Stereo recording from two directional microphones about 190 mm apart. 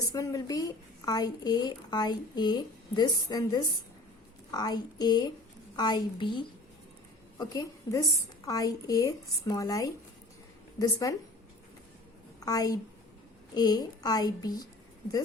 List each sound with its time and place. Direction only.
0.1 s a woman's voice: 15° left (ahead or behind)
12.4 s a woman's voice: 20° left (ahead or behind)